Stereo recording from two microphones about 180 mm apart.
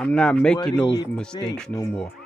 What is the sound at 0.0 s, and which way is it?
Speech, 5° left (ahead or behind).